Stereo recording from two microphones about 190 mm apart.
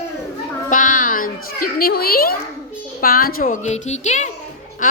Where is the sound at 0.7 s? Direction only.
45° left (ahead or behind).